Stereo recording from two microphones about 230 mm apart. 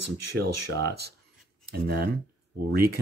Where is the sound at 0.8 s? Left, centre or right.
Right.